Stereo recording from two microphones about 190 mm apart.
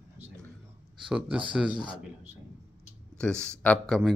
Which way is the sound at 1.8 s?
35° right (ahead or behind).